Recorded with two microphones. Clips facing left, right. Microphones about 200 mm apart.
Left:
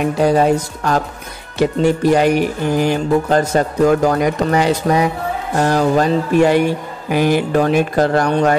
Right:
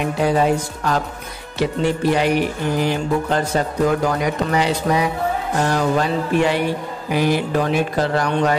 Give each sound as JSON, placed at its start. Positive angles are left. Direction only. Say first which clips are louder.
{"t": 0.2, "sound": "speech", "louder": "left 4 dB", "side_deg": 45}